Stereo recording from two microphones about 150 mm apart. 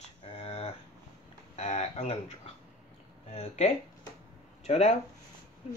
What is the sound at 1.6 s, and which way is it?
Speech, 45° left (ahead or behind).